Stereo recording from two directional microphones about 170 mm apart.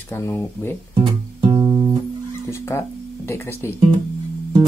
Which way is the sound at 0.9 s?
30° right (ahead or behind).